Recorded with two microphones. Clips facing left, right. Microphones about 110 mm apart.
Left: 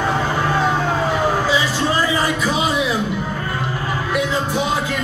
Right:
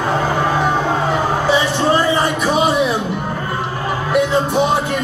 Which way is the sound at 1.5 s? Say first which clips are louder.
Right 4 dB; 25° right (ahead or behind).